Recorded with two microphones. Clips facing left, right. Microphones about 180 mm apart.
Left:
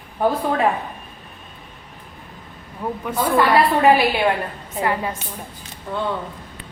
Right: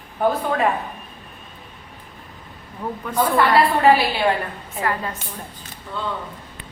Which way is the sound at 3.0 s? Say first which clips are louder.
Even; 10° left (ahead or behind).